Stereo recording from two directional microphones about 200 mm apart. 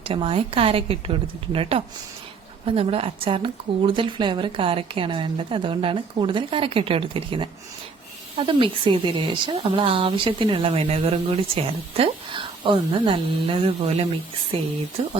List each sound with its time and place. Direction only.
0.0 s speech: 25° right (ahead or behind)
2.6 s speech: 30° right (ahead or behind)